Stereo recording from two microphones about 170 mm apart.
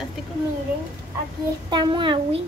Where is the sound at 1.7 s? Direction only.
25° right (ahead or behind).